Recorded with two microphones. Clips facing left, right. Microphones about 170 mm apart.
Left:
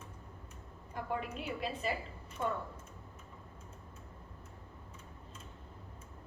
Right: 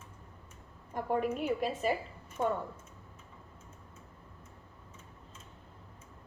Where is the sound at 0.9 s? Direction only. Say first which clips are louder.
Right 7 dB; 50° right (ahead or behind).